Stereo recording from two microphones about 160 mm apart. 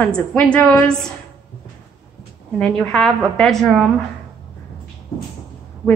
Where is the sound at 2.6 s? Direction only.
5° left (ahead or behind).